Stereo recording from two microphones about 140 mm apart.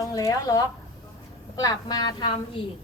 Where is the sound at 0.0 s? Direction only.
25° left (ahead or behind).